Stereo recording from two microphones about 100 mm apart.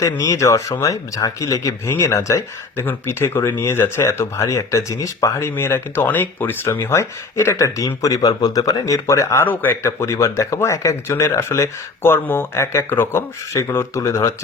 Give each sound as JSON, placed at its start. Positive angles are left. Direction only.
{"t": 0.0, "sound": "speech", "side_deg": 35}
{"t": 9.5, "sound": "speech", "side_deg": 20}